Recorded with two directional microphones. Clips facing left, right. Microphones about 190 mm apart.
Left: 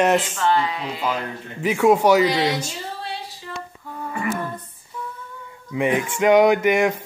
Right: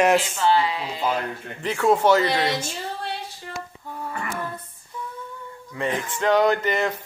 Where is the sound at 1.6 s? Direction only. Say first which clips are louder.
Left 4 dB; 10° left (ahead or behind).